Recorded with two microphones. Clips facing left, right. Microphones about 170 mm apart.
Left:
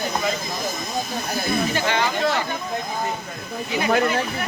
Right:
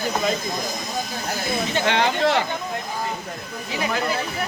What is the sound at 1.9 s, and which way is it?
Speech, 70° right (ahead or behind).